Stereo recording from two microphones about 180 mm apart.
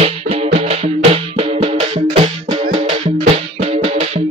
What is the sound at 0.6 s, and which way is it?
Music, 35° right (ahead or behind).